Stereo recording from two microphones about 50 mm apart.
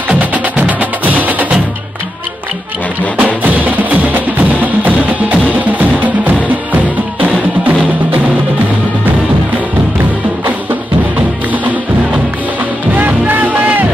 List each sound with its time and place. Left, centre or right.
0.1 s music: right
3.2 s music: right
11.1 s music: right
12.9 s music: right